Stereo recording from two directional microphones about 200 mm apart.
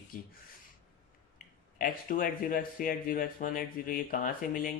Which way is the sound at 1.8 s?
45° left (ahead or behind).